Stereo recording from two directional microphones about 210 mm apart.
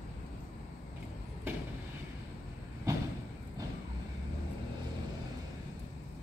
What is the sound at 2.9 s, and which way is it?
Vehicle, 15° right (ahead or behind).